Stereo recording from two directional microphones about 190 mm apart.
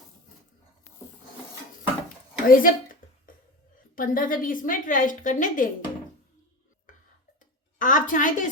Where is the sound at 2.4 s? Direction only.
45° left (ahead or behind).